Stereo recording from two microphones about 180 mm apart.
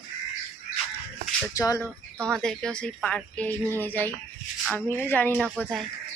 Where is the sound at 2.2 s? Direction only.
5° left (ahead or behind).